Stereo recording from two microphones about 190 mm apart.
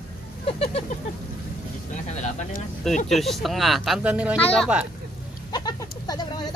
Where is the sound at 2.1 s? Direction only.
40° left (ahead or behind).